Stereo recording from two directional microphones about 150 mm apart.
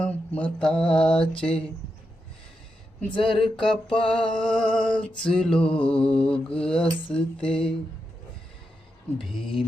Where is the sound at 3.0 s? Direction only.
35° left (ahead or behind).